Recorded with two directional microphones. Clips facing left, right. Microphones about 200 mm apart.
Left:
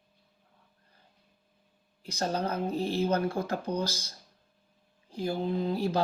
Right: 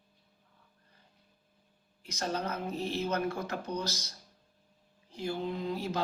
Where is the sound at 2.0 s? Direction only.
30° left (ahead or behind).